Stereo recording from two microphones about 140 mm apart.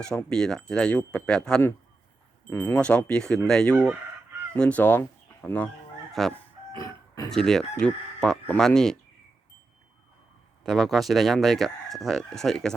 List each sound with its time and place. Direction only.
0.3 s speech: 5° left (ahead or behind)
6.7 s a sound: 25° left (ahead or behind)
7.3 s speech: 5° left (ahead or behind)
10.6 s speech: centre (ahead or behind)